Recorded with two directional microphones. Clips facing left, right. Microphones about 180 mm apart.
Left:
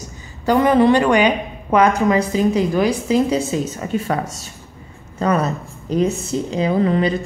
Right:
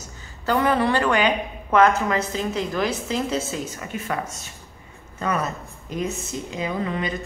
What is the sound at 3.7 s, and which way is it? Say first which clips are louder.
A woman's voice: left 7 dB; 30° left (ahead or behind).